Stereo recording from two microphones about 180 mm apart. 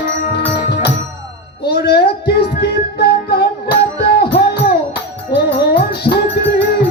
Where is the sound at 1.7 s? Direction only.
60° left (ahead or behind).